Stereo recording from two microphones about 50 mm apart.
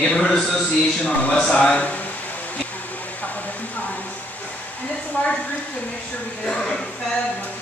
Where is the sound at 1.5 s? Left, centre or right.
Centre.